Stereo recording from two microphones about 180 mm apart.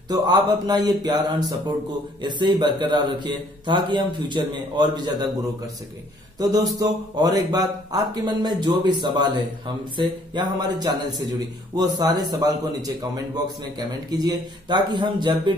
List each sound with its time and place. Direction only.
0.1 s a man's voice: 20° right (ahead or behind)
2.2 s a man's voice: 25° right (ahead or behind)
6.4 s a man's voice: 20° right (ahead or behind)